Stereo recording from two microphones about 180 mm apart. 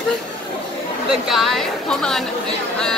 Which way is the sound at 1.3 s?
Centre (ahead or behind).